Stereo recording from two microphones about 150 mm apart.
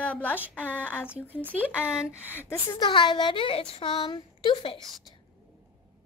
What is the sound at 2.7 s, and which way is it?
Speech, 30° left (ahead or behind).